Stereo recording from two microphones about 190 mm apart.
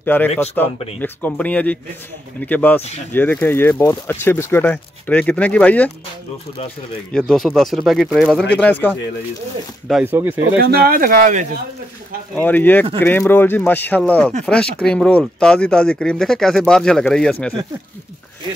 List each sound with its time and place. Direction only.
0.0 s a man's voice: 10° left (ahead or behind)
7.1 s speech: 5° left (ahead or behind)
9.8 s speech: 5° right (ahead or behind)
10.6 s speech: 55° right (ahead or behind)
12.4 s speech: 10° left (ahead or behind)